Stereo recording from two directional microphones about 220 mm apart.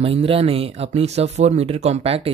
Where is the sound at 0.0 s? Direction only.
25° right (ahead or behind).